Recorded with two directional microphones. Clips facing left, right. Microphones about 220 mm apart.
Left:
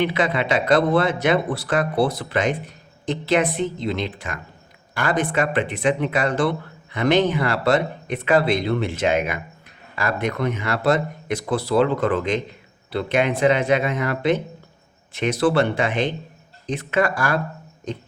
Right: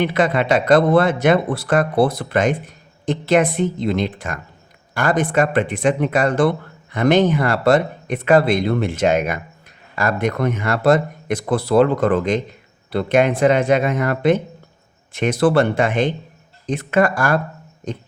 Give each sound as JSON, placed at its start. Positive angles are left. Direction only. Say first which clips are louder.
{"t": 0.0, "sound": "speech", "louder": "right 3 dB", "side_deg": -50}